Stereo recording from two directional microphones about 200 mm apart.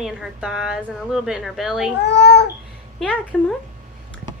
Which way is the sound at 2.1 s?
55° left (ahead or behind).